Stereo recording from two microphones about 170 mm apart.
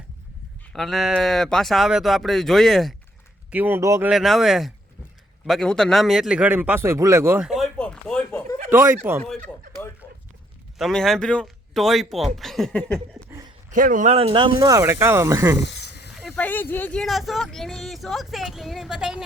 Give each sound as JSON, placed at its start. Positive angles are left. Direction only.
{"t": 0.7, "sound": "speech", "side_deg": 0}
{"t": 3.5, "sound": "speech", "side_deg": -10}
{"t": 4.1, "sound": "speech", "side_deg": 0}
{"t": 7.4, "sound": "a sound", "side_deg": 0}
{"t": 9.0, "sound": "speech", "side_deg": -10}
{"t": 9.5, "sound": "a sound", "side_deg": 5}
{"t": 10.8, "sound": "speech", "side_deg": 0}
{"t": 13.7, "sound": "speech", "side_deg": -50}
{"t": 15.6, "sound": "snake", "side_deg": 80}
{"t": 16.1, "sound": "speech", "side_deg": 0}